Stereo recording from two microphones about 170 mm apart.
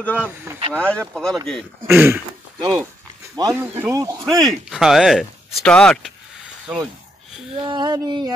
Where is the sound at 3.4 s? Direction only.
25° right (ahead or behind).